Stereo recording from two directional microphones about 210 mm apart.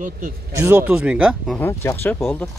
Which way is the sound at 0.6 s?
10° right (ahead or behind).